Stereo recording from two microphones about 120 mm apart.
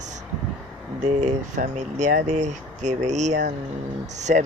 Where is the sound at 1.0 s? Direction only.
85° right.